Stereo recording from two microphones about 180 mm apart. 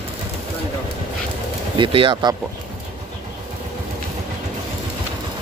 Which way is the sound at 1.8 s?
30° right (ahead or behind).